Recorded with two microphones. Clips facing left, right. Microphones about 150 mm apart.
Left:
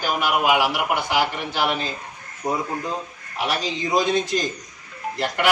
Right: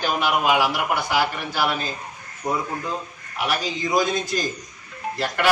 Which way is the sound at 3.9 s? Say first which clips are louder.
Left 2 dB; 25° left (ahead or behind).